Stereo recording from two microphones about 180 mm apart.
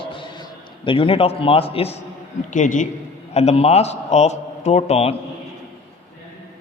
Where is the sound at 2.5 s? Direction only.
45° left (ahead or behind).